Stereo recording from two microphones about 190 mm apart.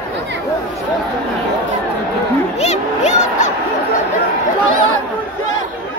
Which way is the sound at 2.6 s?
35° left (ahead or behind).